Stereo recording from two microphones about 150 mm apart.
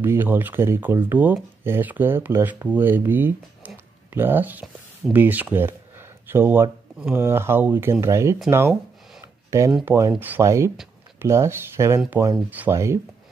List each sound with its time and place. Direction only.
0.0 s speech: 15° right (ahead or behind)